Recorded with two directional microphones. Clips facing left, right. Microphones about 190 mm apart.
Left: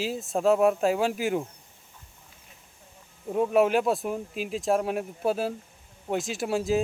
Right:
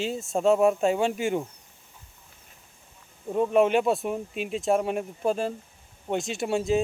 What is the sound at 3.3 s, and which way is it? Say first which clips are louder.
Speech: right 1 dB; 5° left (ahead or behind).